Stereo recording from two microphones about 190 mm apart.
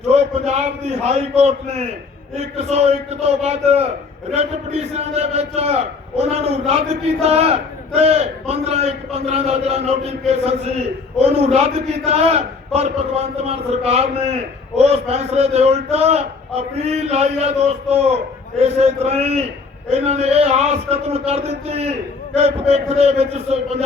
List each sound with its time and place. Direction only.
0.1 s a man's voice: 35° right (ahead or behind)
13.4 s a man's voice: 35° right (ahead or behind)